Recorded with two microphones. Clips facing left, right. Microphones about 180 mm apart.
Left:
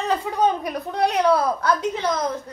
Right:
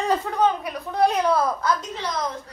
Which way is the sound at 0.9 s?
65° left (ahead or behind).